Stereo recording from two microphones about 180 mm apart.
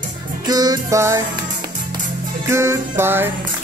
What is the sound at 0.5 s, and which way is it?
Music, 20° right (ahead or behind).